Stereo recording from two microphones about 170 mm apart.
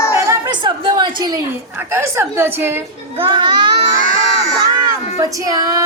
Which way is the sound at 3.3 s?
25° right (ahead or behind).